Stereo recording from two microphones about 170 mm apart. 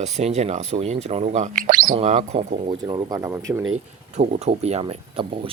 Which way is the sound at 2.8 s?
25° right (ahead or behind).